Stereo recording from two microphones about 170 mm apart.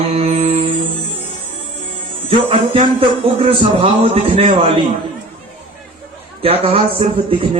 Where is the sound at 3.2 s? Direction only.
30° right (ahead or behind).